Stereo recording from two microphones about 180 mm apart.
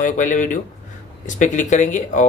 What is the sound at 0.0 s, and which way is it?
Speech, 45° left (ahead or behind).